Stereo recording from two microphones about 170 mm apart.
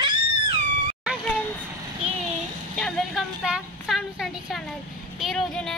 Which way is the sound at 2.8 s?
5° right (ahead or behind).